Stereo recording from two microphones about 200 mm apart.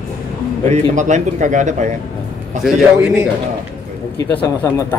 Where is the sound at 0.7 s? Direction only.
35° right (ahead or behind).